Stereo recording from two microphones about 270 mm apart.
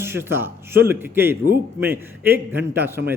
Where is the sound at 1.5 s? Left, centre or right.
Right.